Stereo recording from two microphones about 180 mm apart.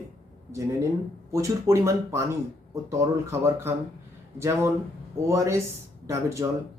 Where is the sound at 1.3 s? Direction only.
15° right (ahead or behind).